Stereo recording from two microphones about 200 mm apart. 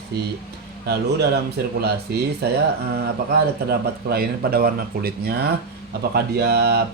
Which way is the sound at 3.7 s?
50° right (ahead or behind).